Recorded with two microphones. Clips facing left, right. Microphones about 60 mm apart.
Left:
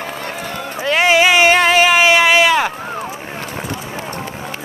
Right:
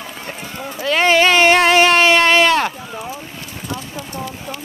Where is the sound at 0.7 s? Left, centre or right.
Centre.